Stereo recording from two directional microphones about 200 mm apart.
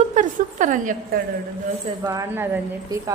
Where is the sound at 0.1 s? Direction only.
40° right (ahead or behind).